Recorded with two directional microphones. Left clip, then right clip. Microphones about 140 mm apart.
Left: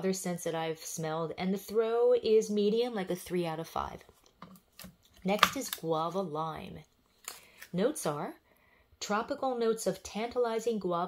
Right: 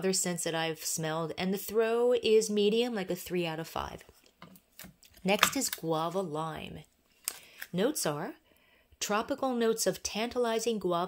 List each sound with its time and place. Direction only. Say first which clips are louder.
0.0 s speech: right 2 dB; 35° right (ahead or behind)
9.0 s speech: right 1 dB; 40° right (ahead or behind)